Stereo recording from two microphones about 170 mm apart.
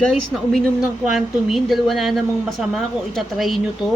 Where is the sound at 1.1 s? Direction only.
Centre (ahead or behind).